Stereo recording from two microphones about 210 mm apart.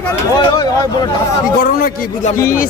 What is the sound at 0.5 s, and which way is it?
Speech, 20° left (ahead or behind).